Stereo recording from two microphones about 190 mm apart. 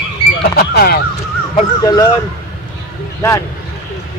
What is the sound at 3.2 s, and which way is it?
Speech, 15° left (ahead or behind).